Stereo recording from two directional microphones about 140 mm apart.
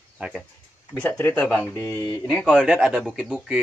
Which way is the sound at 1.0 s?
15° left (ahead or behind).